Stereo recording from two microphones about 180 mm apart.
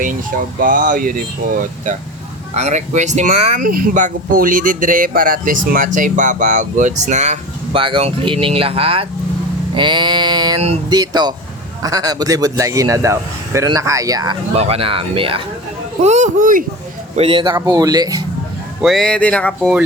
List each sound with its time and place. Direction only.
0.0 s speech: 50° right (ahead or behind)
7.8 s a man's voice: 30° right (ahead or behind)
14.5 s speech: 35° right (ahead or behind)
17.2 s a man's voice: 30° right (ahead or behind)
18.8 s speech: centre (ahead or behind)